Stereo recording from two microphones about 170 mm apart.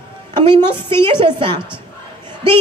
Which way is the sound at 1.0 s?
30° right (ahead or behind).